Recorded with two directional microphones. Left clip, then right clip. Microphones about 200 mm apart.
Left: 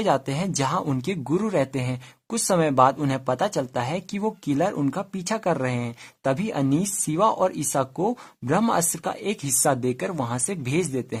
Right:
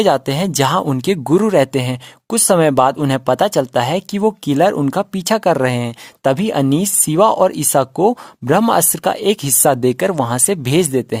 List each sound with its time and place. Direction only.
0.0 s speech: 35° right (ahead or behind)